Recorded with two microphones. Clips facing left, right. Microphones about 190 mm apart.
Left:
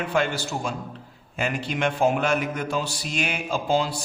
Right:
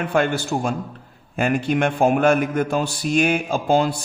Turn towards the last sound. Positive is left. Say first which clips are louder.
# right 5 dB
turn(degrees=-55)  # may be behind; listen again after turning